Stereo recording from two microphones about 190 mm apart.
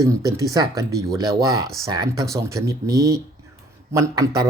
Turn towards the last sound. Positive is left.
turn(degrees=-20)  # may be behind; listen again after turning